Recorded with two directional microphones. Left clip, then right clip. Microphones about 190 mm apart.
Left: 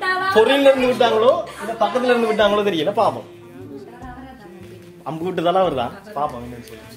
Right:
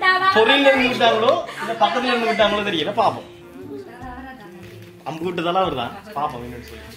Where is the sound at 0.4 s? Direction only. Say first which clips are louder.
Left 5 dB; 70° left (ahead or behind).